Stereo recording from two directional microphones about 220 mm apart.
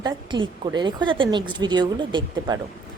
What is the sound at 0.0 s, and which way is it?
A woman's voice, 20° right (ahead or behind).